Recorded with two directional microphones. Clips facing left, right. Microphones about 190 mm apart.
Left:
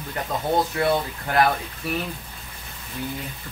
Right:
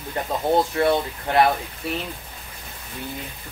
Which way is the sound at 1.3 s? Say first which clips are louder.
Right 2 dB; 25° right (ahead or behind).